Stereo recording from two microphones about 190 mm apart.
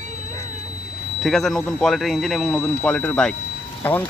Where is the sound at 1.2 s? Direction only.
Centre (ahead or behind).